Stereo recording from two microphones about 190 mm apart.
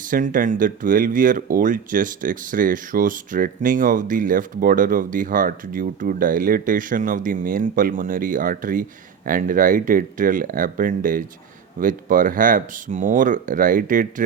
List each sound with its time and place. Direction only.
0.1 s speech: 45° right (ahead or behind)